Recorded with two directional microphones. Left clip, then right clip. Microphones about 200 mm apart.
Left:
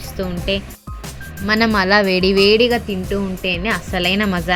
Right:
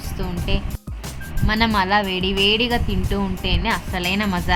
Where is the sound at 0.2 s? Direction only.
15° left (ahead or behind).